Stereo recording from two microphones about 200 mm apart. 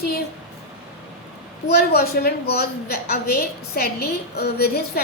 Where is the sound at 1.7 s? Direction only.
50° left (ahead or behind).